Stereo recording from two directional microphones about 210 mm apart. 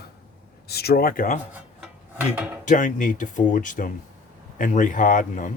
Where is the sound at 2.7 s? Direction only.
35° left (ahead or behind).